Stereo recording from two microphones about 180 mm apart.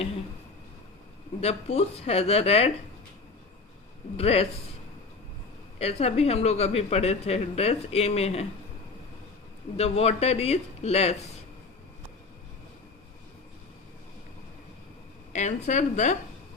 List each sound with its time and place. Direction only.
1.4 s speech: 35° left (ahead or behind)
4.2 s speech: 35° left (ahead or behind)
5.8 s speech: 35° left (ahead or behind)
9.7 s speech: 35° left (ahead or behind)
15.3 s speech: 40° left (ahead or behind)